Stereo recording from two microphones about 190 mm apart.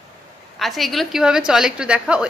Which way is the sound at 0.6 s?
Centre (ahead or behind).